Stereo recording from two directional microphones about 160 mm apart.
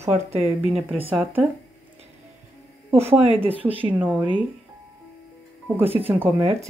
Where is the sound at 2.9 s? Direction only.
15° right (ahead or behind).